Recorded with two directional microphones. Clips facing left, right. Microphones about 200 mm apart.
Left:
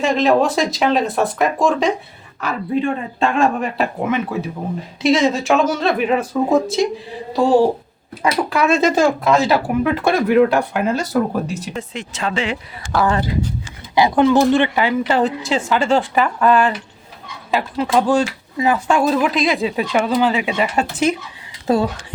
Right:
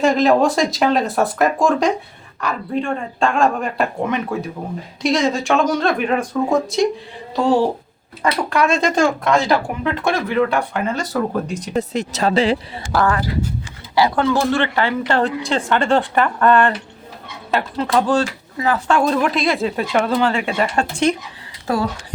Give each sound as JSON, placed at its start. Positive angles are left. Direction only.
{"t": 0.0, "sound": "speech", "side_deg": 0}
{"t": 8.2, "sound": "speech", "side_deg": 5}
{"t": 11.7, "sound": "speech", "side_deg": -40}
{"t": 13.1, "sound": "speech", "side_deg": 25}
{"t": 21.7, "sound": "speech", "side_deg": 25}